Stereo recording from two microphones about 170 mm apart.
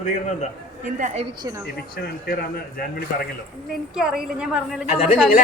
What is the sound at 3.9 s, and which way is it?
A man's voice, 5° right (ahead or behind).